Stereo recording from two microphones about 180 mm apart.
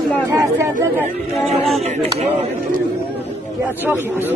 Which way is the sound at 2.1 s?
35° right (ahead or behind).